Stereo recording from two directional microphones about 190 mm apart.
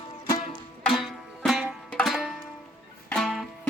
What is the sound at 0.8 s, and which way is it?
Music, centre (ahead or behind).